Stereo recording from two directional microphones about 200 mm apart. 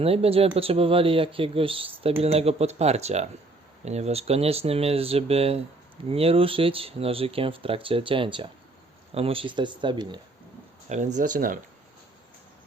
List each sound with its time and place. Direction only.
0.0 s speech: 30° right (ahead or behind)
10.8 s speech: 35° right (ahead or behind)